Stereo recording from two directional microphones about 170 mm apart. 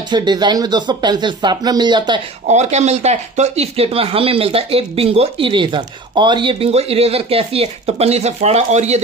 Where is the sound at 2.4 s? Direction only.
40° right (ahead or behind).